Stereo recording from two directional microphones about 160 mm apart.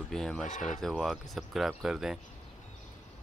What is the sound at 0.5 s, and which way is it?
Speech, 50° left (ahead or behind).